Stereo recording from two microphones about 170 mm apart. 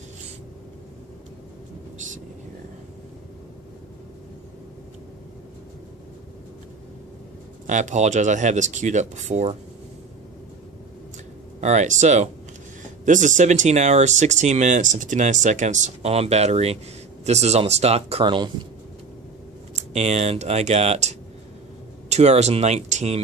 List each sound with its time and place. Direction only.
7.6 s speech: 45° right (ahead or behind)
11.6 s speech: 45° right (ahead or behind)
19.7 s speech: 40° right (ahead or behind)